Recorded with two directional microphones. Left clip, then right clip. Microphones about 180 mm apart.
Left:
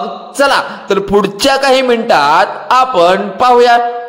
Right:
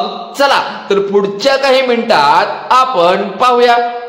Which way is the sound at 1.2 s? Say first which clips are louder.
Left 2 dB; 45° left (ahead or behind).